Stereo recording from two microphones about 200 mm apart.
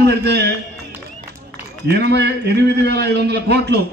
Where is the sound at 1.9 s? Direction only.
55° right (ahead or behind).